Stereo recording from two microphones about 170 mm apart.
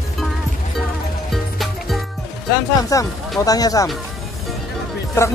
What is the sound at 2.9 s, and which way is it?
Speech, 20° left (ahead or behind).